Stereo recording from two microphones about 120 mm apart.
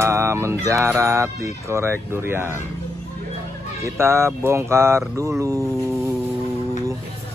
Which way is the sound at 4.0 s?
20° right (ahead or behind).